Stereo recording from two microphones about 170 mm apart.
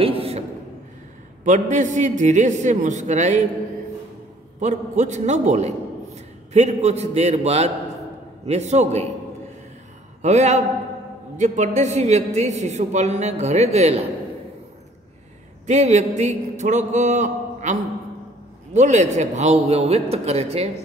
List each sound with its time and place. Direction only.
0.0 s a sound: 35° right (ahead or behind)
1.4 s speech: 45° right (ahead or behind)
4.6 s a man's voice: 45° right (ahead or behind)
10.2 s a man's voice: 40° right (ahead or behind)
15.6 s a man's voice: 40° right (ahead or behind)